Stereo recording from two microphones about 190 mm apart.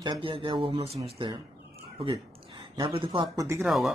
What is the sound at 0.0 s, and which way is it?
Speech, 25° right (ahead or behind).